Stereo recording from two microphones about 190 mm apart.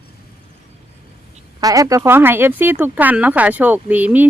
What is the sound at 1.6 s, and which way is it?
Speech, 15° right (ahead or behind).